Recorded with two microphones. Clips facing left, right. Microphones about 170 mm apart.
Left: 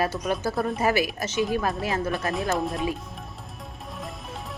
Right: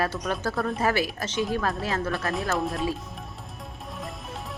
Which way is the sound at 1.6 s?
20° left (ahead or behind).